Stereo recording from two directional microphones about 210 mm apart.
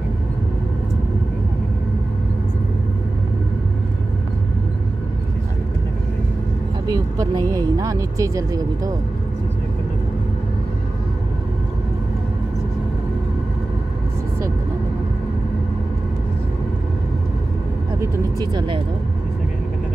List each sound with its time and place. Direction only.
6.9 s speech: 15° right (ahead or behind)
18.0 s vehicle: 20° right (ahead or behind)